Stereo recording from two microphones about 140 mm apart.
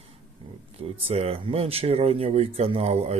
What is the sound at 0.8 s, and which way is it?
Speech, 45° right (ahead or behind).